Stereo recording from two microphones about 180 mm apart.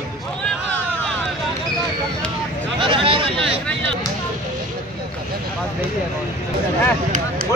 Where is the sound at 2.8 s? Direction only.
30° right (ahead or behind).